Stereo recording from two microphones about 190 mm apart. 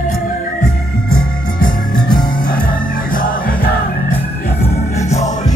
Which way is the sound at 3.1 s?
50° left (ahead or behind).